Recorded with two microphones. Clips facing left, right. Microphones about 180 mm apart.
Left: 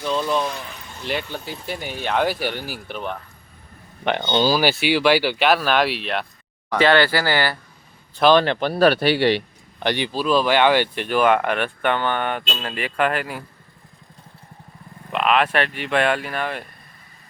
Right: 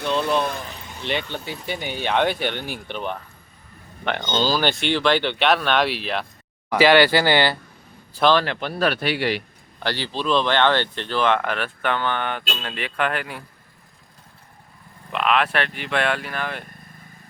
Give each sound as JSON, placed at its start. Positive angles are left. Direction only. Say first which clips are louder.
{"t": 0.3, "sound": "a sound", "louder": "even", "side_deg": 0}
{"t": 1.0, "sound": "speech", "louder": "even", "side_deg": 5}
{"t": 4.0, "sound": "speech", "louder": "left 3 dB", "side_deg": 15}
{"t": 6.7, "sound": "speech", "louder": "right 2 dB", "side_deg": -10}
{"t": 8.3, "sound": "speech", "louder": "left 4 dB", "side_deg": 20}
{"t": 8.6, "sound": "speech", "louder": "left 6 dB", "side_deg": 35}
{"t": 9.8, "sound": "speech", "louder": "left 4 dB", "side_deg": 15}
{"t": 10.2, "sound": "speech", "louder": "left 2 dB", "side_deg": 5}
{"t": 15.1, "sound": "vehicle", "louder": "left 2 dB", "side_deg": 0}
{"t": 15.5, "sound": "speech", "louder": "left 3 dB", "side_deg": 0}